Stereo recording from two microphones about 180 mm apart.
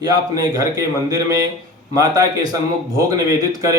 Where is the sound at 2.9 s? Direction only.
20° right (ahead or behind).